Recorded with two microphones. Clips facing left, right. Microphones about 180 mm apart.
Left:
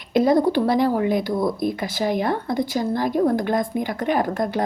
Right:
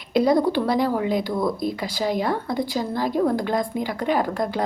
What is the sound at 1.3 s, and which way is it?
Speech, 25° left (ahead or behind).